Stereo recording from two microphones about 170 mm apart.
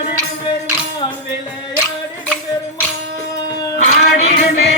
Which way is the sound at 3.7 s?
45° left (ahead or behind).